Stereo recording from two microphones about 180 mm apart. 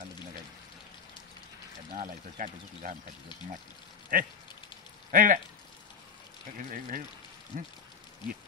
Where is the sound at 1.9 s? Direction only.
45° right (ahead or behind).